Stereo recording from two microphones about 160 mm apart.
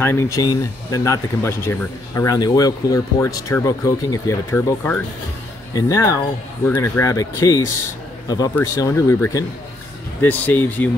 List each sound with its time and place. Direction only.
0.0 s speech: 15° left (ahead or behind)